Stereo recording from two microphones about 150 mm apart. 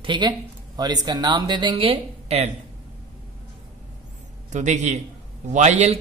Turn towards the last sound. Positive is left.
turn(degrees=-50)  # may be behind; listen again after turning